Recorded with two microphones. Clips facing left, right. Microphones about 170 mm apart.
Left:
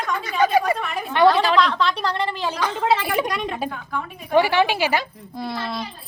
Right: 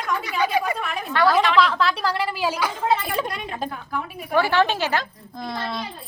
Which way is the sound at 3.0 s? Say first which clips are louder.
Left 3 dB; 15° left (ahead or behind).